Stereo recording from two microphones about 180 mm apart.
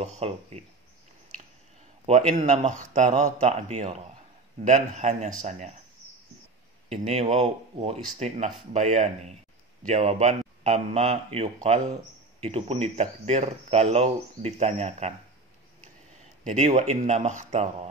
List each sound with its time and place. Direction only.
0.0 s speech: 35° right (ahead or behind)
2.0 s speech: 35° right (ahead or behind)
6.9 s speech: 35° right (ahead or behind)
16.4 s speech: 40° right (ahead or behind)